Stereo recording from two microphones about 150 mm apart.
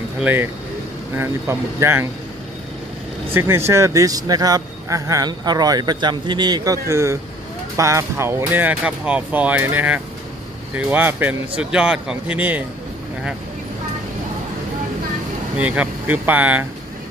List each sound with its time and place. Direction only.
0.2 s speech: 10° right (ahead or behind)
3.3 s speech: 15° right (ahead or behind)
15.6 s speech: 10° right (ahead or behind)